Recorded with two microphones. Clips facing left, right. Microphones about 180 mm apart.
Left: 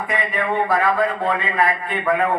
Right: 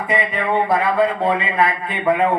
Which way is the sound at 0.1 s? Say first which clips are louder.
Right 3 dB; 20° right (ahead or behind).